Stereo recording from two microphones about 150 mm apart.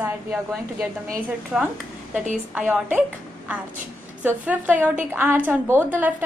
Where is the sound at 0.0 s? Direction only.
5° right (ahead or behind).